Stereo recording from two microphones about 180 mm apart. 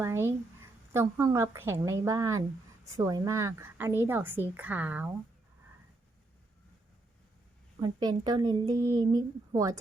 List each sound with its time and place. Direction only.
0.0 s a woman's voice: 15° right (ahead or behind)
7.8 s speech: 20° right (ahead or behind)